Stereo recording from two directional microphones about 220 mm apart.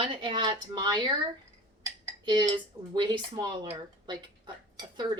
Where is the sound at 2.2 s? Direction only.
20° right (ahead or behind).